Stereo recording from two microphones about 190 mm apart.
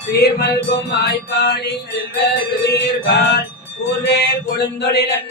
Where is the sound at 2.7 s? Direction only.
60° left (ahead or behind).